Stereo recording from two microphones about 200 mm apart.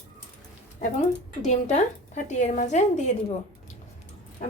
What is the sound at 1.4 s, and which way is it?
Speech, 35° left (ahead or behind).